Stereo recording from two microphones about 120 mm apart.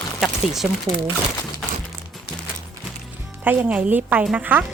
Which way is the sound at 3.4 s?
15° right (ahead or behind).